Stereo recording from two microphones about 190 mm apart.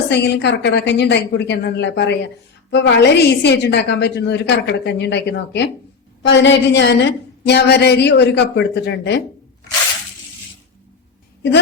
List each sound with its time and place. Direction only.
0.1 s a woman's voice: 65° left (ahead or behind)